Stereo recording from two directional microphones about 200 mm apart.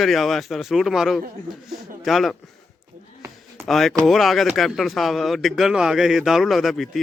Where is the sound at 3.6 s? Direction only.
Centre (ahead or behind).